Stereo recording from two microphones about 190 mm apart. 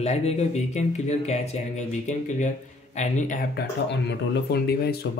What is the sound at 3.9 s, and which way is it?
Speech, 60° left (ahead or behind).